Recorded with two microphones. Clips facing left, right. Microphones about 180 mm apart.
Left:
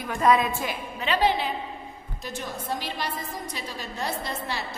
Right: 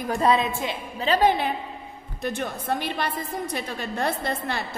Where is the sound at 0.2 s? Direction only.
25° right (ahead or behind).